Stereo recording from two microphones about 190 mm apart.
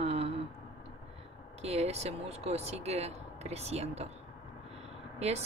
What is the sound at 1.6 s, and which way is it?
A woman's voice, 35° right (ahead or behind).